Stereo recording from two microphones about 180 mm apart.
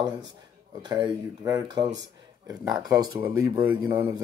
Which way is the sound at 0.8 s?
25° right (ahead or behind).